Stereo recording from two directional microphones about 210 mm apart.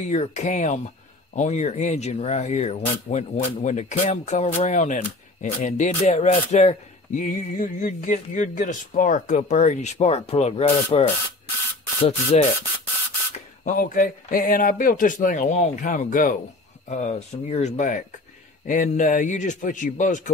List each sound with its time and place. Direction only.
0.0 s speech: 35° left (ahead or behind)